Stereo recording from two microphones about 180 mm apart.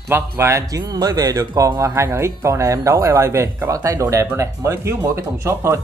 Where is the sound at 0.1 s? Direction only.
15° right (ahead or behind).